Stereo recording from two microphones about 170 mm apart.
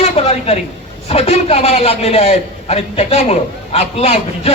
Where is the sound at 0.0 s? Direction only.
35° left (ahead or behind).